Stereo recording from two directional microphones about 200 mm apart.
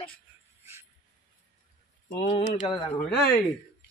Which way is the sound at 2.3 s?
25° left (ahead or behind).